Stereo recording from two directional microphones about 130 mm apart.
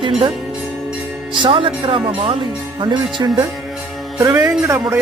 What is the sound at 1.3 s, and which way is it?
Speech, 40° right (ahead or behind).